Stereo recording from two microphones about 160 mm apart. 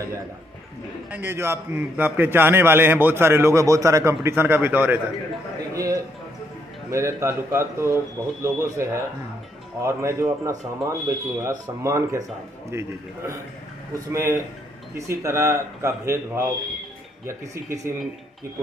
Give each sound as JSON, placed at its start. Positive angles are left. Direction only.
{"t": 1.1, "sound": "a man's voice", "side_deg": -15}
{"t": 14.1, "sound": "a man's voice", "side_deg": -15}